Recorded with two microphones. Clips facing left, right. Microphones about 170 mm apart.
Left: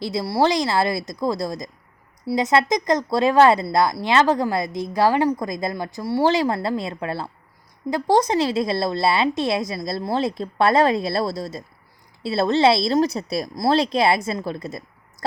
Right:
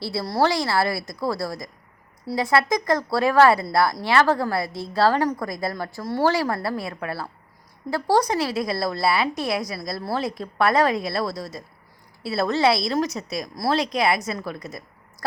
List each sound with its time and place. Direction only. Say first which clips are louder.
0.0 s a woman's voice: left 2 dB; 15° left (ahead or behind)